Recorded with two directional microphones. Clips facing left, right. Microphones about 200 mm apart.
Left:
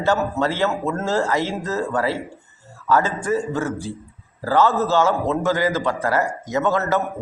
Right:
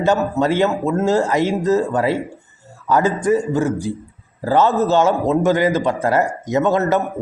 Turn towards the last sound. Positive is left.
turn(degrees=-20)  # may be behind; listen again after turning